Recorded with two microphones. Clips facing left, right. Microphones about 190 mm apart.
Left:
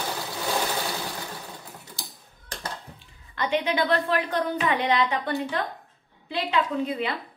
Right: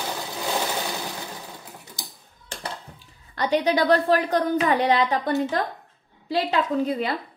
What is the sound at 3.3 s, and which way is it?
A woman's voice, 40° right (ahead or behind).